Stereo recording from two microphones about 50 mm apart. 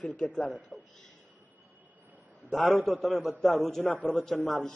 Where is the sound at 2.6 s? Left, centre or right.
Centre.